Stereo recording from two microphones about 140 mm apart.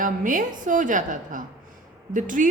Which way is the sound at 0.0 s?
70° right (ahead or behind).